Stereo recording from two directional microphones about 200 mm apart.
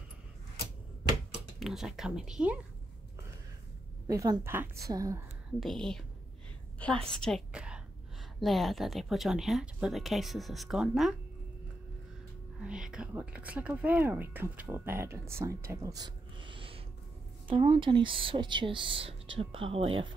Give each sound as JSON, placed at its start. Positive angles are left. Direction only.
{"t": 1.6, "sound": "speech", "side_deg": 0}
{"t": 4.1, "sound": "speech", "side_deg": -15}
{"t": 5.6, "sound": "speech", "side_deg": 0}
{"t": 7.1, "sound": "a woman's voice", "side_deg": 5}
{"t": 12.6, "sound": "speech", "side_deg": -5}